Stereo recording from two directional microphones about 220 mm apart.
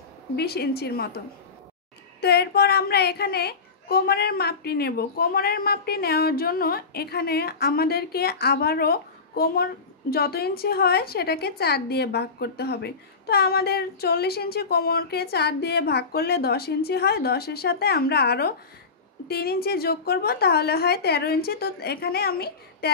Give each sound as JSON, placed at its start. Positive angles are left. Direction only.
{"t": 0.4, "sound": "a woman's voice", "side_deg": 45}
{"t": 2.2, "sound": "a woman's voice", "side_deg": 45}